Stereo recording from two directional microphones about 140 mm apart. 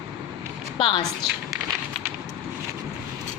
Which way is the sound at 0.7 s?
40° left (ahead or behind).